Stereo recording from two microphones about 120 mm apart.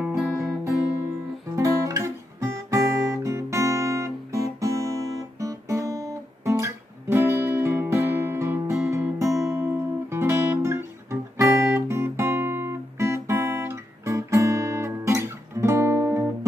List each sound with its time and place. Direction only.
0.4 s music: 25° right (ahead or behind)
1.6 s guitar: 25° right (ahead or behind)